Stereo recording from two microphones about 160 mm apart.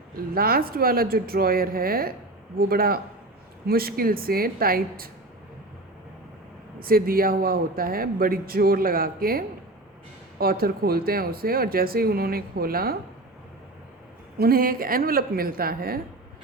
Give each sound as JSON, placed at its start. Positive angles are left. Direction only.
{"t": 0.3, "sound": "speech", "side_deg": -70}
{"t": 6.7, "sound": "a man's voice", "side_deg": -65}
{"t": 14.3, "sound": "a man's voice", "side_deg": -70}